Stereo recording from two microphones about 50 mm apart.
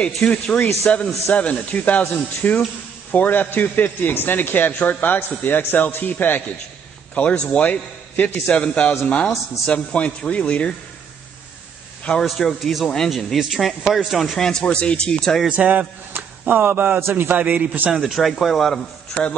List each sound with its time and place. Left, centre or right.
0.0 s a man's voice: left
7.3 s a man's voice: left
12.4 s speech: centre
14.4 s speech: centre
15.4 s a man's voice: right
16.1 s a man's voice: right
17.9 s speech: centre